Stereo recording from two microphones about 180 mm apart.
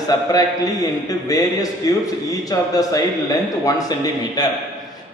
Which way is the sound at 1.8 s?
20° left (ahead or behind).